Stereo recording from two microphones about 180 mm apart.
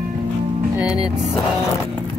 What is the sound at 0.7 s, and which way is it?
Speech, 5° right (ahead or behind).